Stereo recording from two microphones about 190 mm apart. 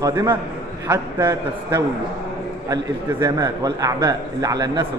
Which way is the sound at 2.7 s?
15° right (ahead or behind).